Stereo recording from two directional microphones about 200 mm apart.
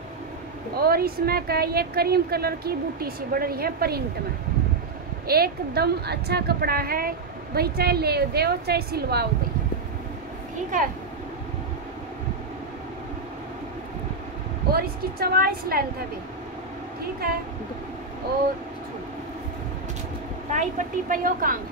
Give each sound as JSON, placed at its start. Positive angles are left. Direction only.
{"t": 0.7, "sound": "a woman's voice", "side_deg": -50}
{"t": 5.2, "sound": "a woman's voice", "side_deg": -50}
{"t": 14.7, "sound": "a woman's voice", "side_deg": -50}
{"t": 20.5, "sound": "a woman's voice", "side_deg": -40}